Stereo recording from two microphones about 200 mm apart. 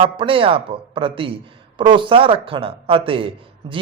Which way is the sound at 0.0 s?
25° right (ahead or behind).